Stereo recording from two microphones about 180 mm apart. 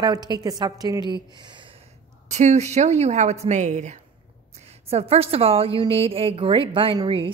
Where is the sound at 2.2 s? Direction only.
40° right (ahead or behind).